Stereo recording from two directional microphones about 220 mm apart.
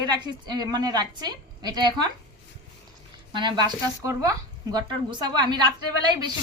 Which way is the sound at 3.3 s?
20° right (ahead or behind).